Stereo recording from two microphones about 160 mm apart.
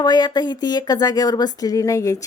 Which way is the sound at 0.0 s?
25° left (ahead or behind).